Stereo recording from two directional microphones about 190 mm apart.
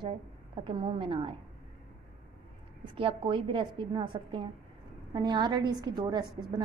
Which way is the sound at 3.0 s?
25° right (ahead or behind).